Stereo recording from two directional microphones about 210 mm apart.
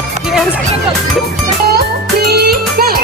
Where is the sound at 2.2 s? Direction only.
50° right (ahead or behind).